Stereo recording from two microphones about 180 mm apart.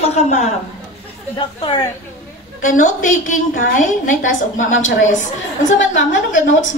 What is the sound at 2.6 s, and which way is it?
A woman's voice, 45° left (ahead or behind).